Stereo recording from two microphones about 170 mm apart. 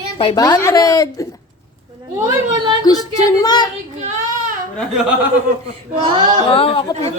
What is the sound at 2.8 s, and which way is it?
Speech, 20° left (ahead or behind).